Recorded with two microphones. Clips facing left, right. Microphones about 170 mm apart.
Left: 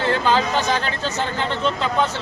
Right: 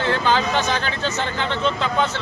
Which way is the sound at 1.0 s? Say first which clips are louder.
Even; 40° left (ahead or behind).